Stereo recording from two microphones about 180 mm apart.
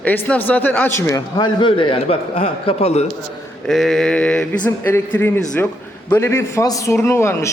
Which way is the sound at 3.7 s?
Centre (ahead or behind).